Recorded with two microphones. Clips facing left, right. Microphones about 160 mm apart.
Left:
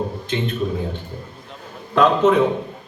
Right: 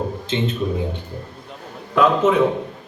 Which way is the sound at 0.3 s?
25° right (ahead or behind).